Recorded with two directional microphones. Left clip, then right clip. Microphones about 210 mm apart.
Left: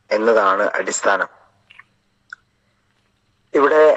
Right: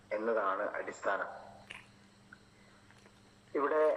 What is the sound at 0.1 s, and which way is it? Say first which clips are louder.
A man's voice: left 18 dB; 50° left (ahead or behind).